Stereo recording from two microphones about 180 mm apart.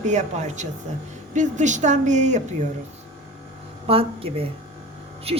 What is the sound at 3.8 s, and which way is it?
A woman's voice, 30° right (ahead or behind).